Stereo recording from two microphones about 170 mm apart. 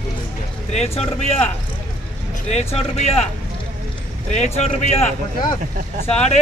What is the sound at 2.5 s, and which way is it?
Speech, 40° left (ahead or behind).